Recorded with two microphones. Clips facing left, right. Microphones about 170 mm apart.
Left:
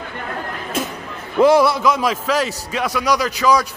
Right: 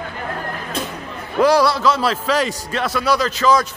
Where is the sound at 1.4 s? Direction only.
20° left (ahead or behind).